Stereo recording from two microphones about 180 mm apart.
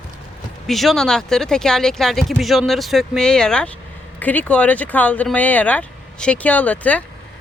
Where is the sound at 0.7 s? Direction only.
Centre (ahead or behind).